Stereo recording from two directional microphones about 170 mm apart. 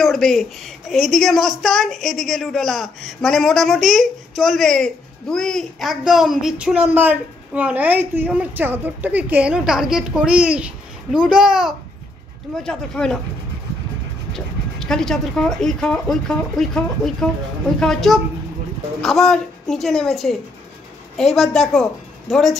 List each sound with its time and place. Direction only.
0.0 s a woman's voice: centre (ahead or behind)
14.3 s a woman's voice: 5° left (ahead or behind)